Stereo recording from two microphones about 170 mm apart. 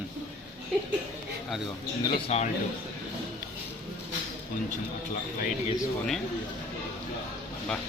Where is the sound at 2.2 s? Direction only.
40° left (ahead or behind).